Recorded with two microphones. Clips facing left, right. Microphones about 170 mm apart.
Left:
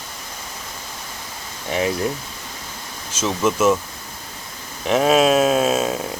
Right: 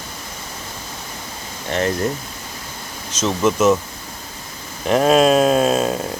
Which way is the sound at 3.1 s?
5° left (ahead or behind).